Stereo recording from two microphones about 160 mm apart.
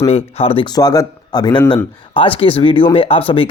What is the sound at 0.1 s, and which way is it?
Speech, 40° left (ahead or behind).